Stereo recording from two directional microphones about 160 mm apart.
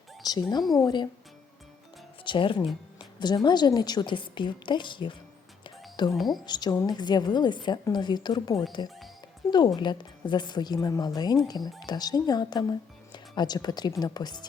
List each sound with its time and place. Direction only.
0.2 s speech: 25° left (ahead or behind)
0.6 s a woman's voice: centre (ahead or behind)
2.2 s a woman's voice: 30° left (ahead or behind)
6.1 s a woman's voice: centre (ahead or behind)
6.4 s a woman's voice: 25° left (ahead or behind)